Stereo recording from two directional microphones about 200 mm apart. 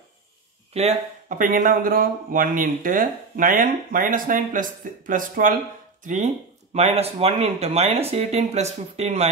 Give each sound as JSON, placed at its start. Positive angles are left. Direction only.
{"t": 0.7, "sound": "speech", "side_deg": -35}